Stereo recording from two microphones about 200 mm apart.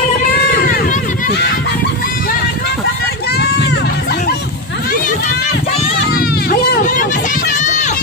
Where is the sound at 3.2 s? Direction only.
55° left (ahead or behind).